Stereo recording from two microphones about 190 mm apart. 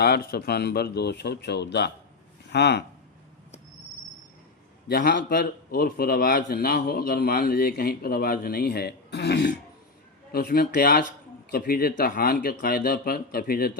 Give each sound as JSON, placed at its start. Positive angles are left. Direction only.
{"t": 0.0, "sound": "a man's voice", "side_deg": 55}
{"t": 4.9, "sound": "a man's voice", "side_deg": 60}